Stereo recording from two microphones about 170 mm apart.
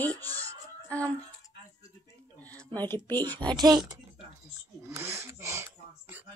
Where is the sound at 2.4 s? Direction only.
10° left (ahead or behind).